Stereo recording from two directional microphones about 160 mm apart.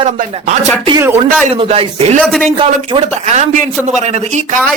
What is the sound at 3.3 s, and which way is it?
Speech, 45° right (ahead or behind).